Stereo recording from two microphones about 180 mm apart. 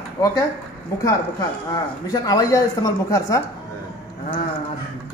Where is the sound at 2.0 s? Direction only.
20° left (ahead or behind).